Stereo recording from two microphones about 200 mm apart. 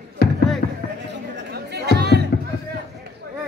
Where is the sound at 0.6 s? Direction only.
50° left (ahead or behind).